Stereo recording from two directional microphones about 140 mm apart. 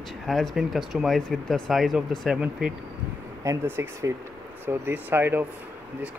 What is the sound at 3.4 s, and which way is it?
Speech, 20° right (ahead or behind).